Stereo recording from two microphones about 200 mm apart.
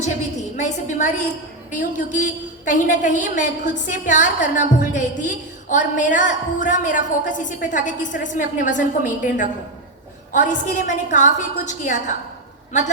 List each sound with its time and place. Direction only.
0.5 s a woman's voice: 35° left (ahead or behind)